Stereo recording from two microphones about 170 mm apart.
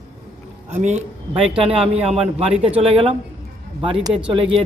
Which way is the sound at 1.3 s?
30° right (ahead or behind).